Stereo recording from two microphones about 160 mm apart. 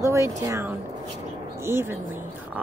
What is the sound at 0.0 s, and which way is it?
Speech, 20° right (ahead or behind).